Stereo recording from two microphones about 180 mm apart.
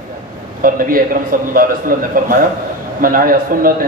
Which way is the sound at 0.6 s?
50° right (ahead or behind).